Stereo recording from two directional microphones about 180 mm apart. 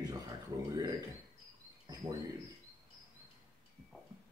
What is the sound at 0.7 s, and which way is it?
Speech, 20° right (ahead or behind).